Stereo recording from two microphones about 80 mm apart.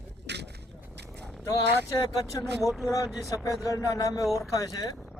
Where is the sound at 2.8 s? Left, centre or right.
Left.